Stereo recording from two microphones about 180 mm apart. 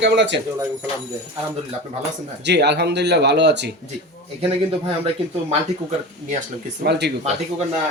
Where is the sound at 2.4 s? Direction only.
70° right (ahead or behind).